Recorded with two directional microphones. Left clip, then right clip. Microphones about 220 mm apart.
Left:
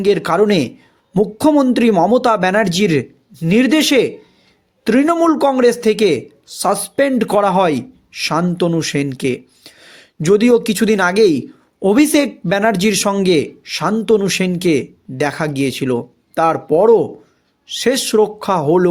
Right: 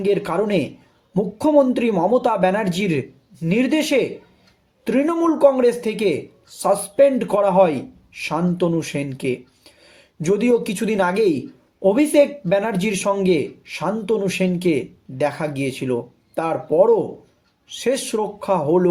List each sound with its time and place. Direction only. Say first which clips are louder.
0.0 s a man's voice: left 6 dB; 50° left (ahead or behind)